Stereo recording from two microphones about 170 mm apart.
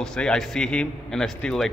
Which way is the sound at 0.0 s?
5° left (ahead or behind).